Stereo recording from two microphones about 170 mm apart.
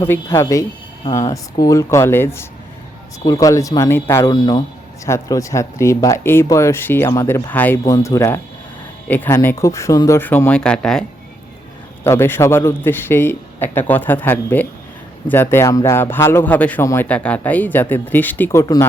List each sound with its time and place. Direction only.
0.0 s speech: 15° left (ahead or behind)
12.0 s speech: 15° left (ahead or behind)
18.6 s speech: 20° left (ahead or behind)